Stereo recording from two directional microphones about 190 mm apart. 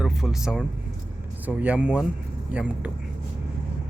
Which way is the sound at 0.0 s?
5° right (ahead or behind).